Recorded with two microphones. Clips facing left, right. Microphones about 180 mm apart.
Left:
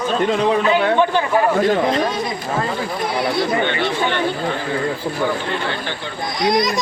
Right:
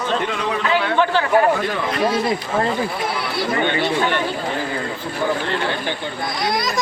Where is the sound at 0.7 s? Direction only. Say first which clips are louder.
Left 3 dB; 15° left (ahead or behind).